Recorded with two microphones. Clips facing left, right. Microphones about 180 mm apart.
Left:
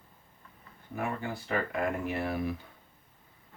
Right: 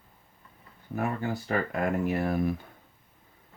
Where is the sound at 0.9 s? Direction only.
40° right (ahead or behind).